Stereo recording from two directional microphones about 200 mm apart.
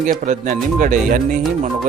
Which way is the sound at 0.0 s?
40° right (ahead or behind).